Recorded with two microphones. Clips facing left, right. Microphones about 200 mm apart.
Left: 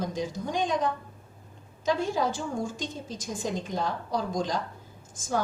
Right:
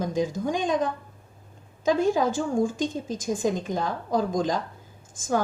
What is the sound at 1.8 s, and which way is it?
A woman's voice, 50° right (ahead or behind).